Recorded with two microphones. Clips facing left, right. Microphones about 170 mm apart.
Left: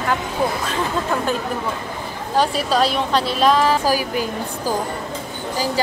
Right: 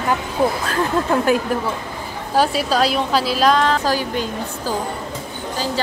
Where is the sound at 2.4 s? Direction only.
Centre (ahead or behind).